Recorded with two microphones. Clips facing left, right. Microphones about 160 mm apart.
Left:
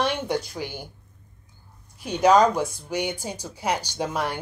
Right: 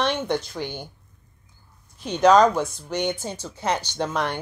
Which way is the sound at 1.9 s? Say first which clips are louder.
Right 2 dB; 10° left (ahead or behind).